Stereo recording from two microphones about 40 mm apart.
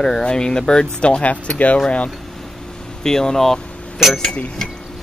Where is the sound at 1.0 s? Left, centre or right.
Left.